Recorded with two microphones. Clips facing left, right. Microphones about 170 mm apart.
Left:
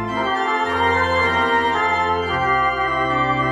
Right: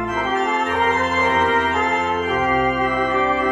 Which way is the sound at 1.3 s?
35° left (ahead or behind).